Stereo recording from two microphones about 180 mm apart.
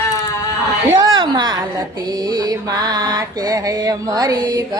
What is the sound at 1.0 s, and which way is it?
Speech, 25° right (ahead or behind).